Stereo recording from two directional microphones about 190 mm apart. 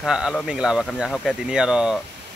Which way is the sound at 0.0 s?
5° right (ahead or behind).